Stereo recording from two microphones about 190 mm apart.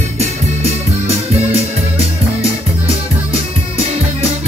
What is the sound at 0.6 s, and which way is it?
Music, 30° right (ahead or behind).